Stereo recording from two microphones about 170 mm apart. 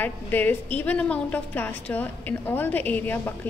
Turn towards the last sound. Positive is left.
turn(degrees=10)  # may be behind; listen again after turning